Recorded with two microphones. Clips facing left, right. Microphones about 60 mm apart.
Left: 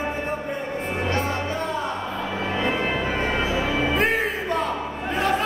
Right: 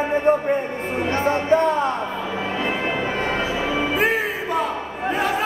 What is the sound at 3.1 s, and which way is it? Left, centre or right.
Music, centre.